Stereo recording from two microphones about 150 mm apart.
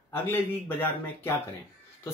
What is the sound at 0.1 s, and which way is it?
Speech, 15° left (ahead or behind).